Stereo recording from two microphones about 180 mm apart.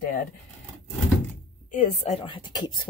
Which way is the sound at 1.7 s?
40° left (ahead or behind).